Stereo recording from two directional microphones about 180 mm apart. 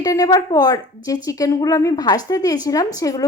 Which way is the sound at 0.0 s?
20° left (ahead or behind).